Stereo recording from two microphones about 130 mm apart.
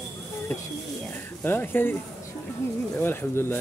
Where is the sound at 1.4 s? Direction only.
15° left (ahead or behind).